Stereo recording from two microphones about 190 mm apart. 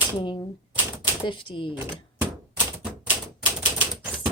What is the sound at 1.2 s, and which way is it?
Speech, 25° left (ahead or behind).